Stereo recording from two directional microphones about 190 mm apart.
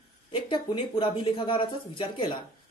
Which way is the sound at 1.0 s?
25° left (ahead or behind).